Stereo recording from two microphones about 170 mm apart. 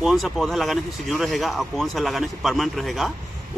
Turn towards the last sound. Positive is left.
turn(degrees=0)  # may be behind; listen again after turning